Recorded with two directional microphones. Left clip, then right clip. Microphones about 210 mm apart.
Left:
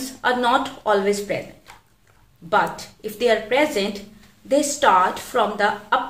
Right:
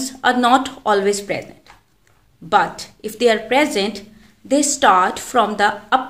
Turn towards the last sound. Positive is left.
turn(degrees=-55)  # may be behind; listen again after turning